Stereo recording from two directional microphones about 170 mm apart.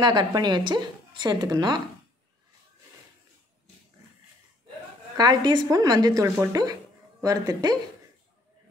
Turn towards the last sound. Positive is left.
turn(degrees=-20)  # may be behind; listen again after turning